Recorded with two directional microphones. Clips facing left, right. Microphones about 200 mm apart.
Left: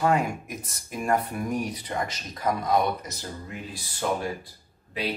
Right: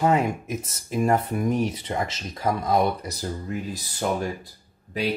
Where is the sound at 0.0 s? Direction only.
20° right (ahead or behind); by 3.8 s 40° right (ahead or behind).